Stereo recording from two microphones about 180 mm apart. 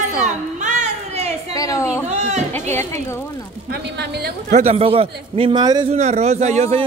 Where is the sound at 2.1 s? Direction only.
40° right (ahead or behind).